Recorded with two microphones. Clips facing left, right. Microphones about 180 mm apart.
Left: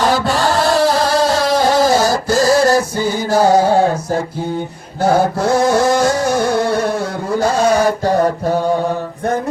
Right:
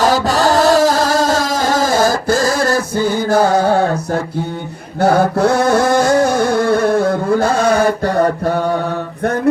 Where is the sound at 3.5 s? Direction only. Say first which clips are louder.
Left 1 dB; 60° right (ahead or behind).